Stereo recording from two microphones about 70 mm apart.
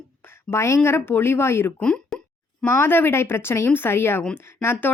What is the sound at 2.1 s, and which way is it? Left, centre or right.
Plop, centre.